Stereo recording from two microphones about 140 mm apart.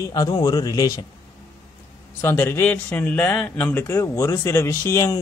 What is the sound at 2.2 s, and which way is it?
Speech, 15° left (ahead or behind).